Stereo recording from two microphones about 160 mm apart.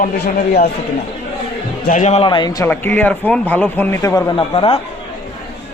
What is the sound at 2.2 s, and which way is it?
Speech, 30° left (ahead or behind).